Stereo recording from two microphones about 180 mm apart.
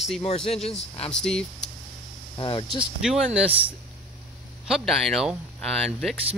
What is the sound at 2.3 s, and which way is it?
Speech, 25° left (ahead or behind).